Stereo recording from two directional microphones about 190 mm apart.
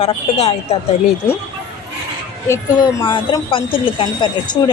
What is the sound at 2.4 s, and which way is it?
Speech, 15° left (ahead or behind).